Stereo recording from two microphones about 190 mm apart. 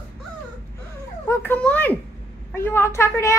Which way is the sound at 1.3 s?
10° left (ahead or behind).